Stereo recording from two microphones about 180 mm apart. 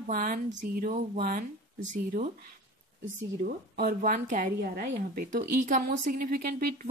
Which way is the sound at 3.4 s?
55° right (ahead or behind).